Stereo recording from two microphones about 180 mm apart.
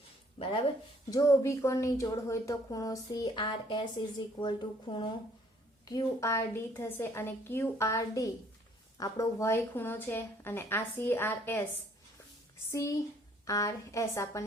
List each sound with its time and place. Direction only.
0.3 s speech: 30° left (ahead or behind); by 11.6 s 10° left (ahead or behind)
12.7 s speech: 15° left (ahead or behind)